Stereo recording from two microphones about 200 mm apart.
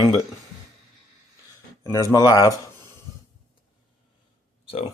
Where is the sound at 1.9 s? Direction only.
15° left (ahead or behind).